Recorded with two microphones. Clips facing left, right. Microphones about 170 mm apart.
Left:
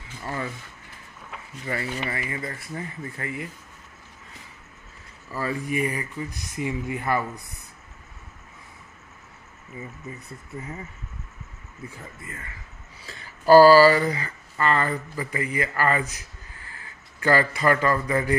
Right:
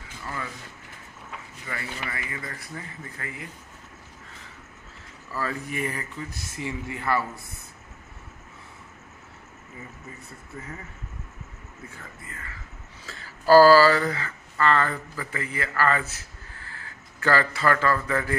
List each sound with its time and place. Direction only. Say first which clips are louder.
0.2 s speech: left 4 dB; 25° left (ahead or behind)
1.7 s speech: left 6 dB; 30° left (ahead or behind)
5.3 s speech: left 3 dB; 15° left (ahead or behind)
12.3 s a man's voice: left 1 dB; 20° left (ahead or behind)